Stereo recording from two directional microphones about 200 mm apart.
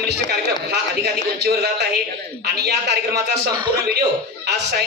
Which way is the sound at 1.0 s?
55° right (ahead or behind).